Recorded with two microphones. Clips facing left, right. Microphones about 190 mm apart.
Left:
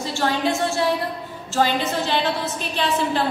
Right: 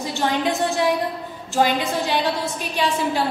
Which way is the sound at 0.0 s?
15° right (ahead or behind).